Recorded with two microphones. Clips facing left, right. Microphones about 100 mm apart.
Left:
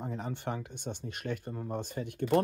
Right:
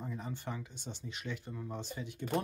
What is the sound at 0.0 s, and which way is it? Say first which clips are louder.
Speech: left 5 dB; 60° left (ahead or behind).